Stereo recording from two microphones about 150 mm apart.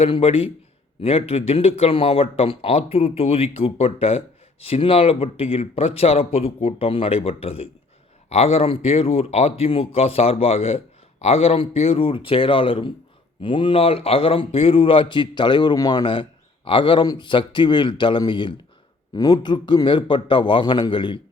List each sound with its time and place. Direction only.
0.0 s speech: 40° left (ahead or behind)